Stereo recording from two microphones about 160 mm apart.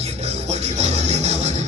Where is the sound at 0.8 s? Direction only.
45° right (ahead or behind).